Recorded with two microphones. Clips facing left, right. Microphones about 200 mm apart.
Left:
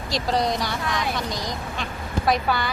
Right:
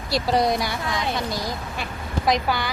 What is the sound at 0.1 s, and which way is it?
Speech, 10° right (ahead or behind).